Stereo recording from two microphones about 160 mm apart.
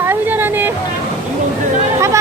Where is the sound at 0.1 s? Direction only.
15° right (ahead or behind).